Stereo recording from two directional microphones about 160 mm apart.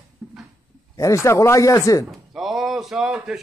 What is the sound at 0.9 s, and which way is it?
Speech, 20° left (ahead or behind).